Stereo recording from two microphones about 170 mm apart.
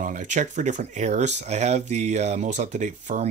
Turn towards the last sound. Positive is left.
turn(degrees=-45)  # may be behind; listen again after turning